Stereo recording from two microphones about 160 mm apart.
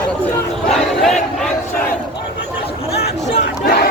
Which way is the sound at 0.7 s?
Centre (ahead or behind).